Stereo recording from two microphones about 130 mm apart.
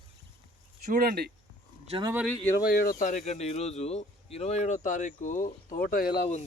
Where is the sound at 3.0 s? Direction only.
75° left (ahead or behind); by 6.1 s 90° left.